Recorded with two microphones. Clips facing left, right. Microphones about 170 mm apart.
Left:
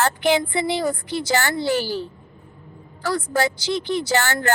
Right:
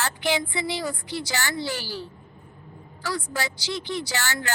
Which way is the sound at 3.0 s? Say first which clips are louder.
Left 8 dB; 55° left (ahead or behind).